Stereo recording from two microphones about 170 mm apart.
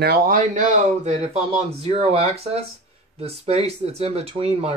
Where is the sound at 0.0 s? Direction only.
60° right (ahead or behind); by 1.3 s 45° right (ahead or behind).